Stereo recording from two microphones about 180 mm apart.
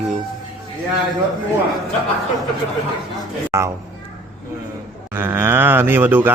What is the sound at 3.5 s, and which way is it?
Speech, 15° right (ahead or behind).